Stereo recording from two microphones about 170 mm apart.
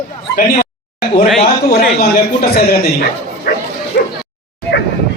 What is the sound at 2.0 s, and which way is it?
Speech, 65° left (ahead or behind).